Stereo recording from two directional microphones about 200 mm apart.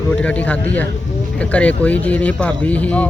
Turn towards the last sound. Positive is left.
turn(degrees=5)  # may be behind; listen again after turning